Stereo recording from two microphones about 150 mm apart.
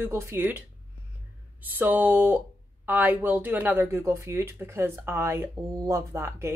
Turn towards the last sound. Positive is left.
turn(degrees=-20)  # may be behind; listen again after turning